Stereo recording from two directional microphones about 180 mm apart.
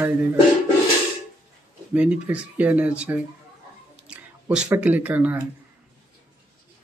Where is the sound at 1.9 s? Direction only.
5° right (ahead or behind).